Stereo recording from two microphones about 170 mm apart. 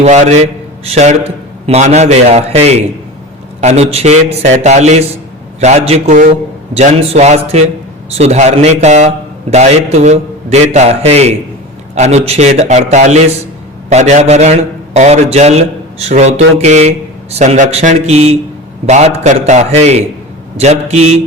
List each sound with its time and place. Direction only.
0.0 s a man's voice: 40° right (ahead or behind)